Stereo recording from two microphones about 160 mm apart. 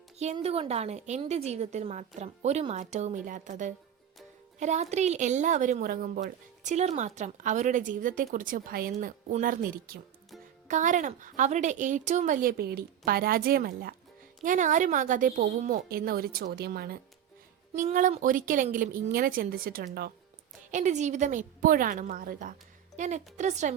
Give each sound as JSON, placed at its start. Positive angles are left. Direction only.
{"t": 0.3, "sound": "a woman's voice", "side_deg": -35}
{"t": 10.7, "sound": "a woman's voice", "side_deg": -50}
{"t": 14.4, "sound": "a woman's voice", "side_deg": -55}
{"t": 17.7, "sound": "a woman's voice", "side_deg": -55}
{"t": 20.7, "sound": "a woman's voice", "side_deg": -50}
{"t": 23.0, "sound": "a woman's voice", "side_deg": -50}